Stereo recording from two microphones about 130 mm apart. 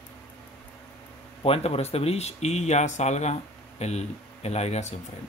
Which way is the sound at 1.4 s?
50° left (ahead or behind).